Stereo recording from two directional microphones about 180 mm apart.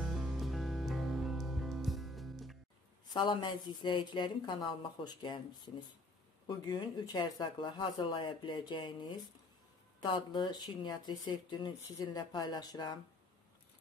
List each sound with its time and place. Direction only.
0.1 s music: centre (ahead or behind)
3.1 s speech: 25° left (ahead or behind)
6.4 s speech: 25° left (ahead or behind)